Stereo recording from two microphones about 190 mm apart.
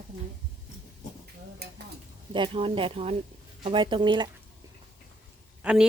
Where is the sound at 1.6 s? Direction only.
55° right (ahead or behind).